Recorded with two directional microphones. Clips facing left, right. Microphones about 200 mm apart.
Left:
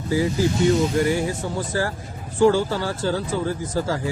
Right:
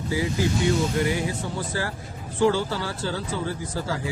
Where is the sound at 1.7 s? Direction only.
45° left (ahead or behind).